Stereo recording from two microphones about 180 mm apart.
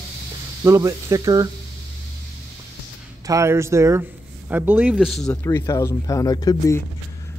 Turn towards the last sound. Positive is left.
turn(degrees=20)  # may be behind; listen again after turning